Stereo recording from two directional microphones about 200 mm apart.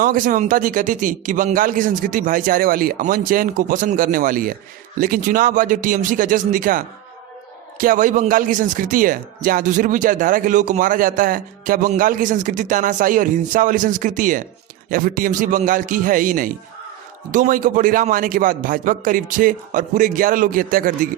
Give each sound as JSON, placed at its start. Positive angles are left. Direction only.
{"t": 0.0, "sound": "a man's voice", "side_deg": -40}